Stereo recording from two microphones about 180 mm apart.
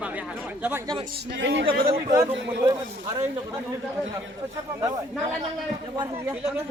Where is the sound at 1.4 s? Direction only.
90° right.